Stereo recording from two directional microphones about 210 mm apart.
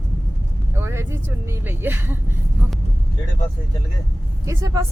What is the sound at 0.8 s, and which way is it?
Speech, 10° right (ahead or behind).